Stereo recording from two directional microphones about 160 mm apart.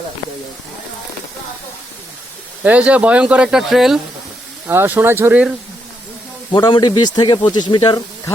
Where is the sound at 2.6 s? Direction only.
10° right (ahead or behind).